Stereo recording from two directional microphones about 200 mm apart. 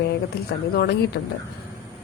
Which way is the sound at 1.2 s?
65° left (ahead or behind).